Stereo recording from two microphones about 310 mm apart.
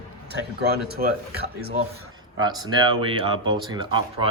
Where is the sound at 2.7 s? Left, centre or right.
Centre.